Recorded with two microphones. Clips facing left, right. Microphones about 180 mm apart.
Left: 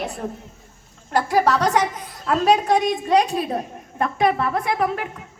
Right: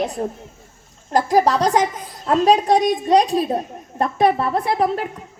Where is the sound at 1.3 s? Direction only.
35° right (ahead or behind).